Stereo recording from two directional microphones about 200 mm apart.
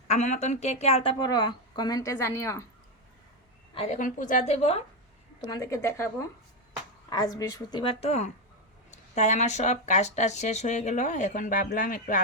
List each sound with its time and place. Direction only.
0.1 s a woman's voice: 35° left (ahead or behind); by 2.6 s 15° left (ahead or behind)
3.8 s speech: 35° left (ahead or behind)
5.5 s a woman's voice: 15° left (ahead or behind); by 12.2 s 40° left (ahead or behind)